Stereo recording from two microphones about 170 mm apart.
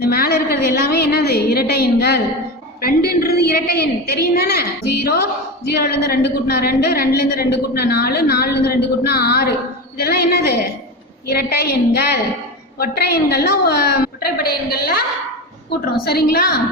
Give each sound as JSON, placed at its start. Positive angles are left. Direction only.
{"t": 0.0, "sound": "a woman's voice", "side_deg": 65}
{"t": 5.6, "sound": "a woman's voice", "side_deg": 65}
{"t": 16.0, "sound": "a woman's voice", "side_deg": 65}